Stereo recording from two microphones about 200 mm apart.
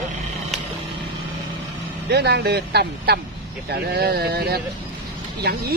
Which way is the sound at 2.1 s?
55° right (ahead or behind).